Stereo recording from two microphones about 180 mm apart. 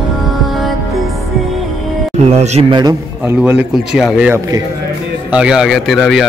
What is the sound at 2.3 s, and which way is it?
Speech, 35° right (ahead or behind).